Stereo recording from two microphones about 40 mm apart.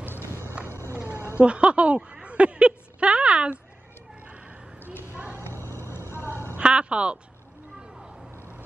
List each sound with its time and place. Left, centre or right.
0.1 s run: left
0.7 s a sound: left
1.4 s speech: right
2.2 s a sound: right
5.6 s vehicle: left
6.6 s speech: right